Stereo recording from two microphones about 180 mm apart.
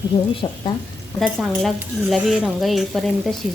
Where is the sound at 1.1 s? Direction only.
Centre (ahead or behind).